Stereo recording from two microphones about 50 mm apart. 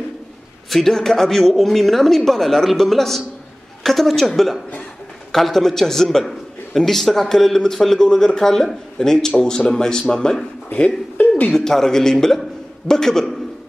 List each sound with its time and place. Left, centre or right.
0.7 s a woman's voice: centre
10.7 s speech: left
11.5 s a man's voice: centre